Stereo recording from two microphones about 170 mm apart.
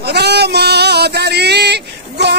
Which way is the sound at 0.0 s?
75° right (ahead or behind).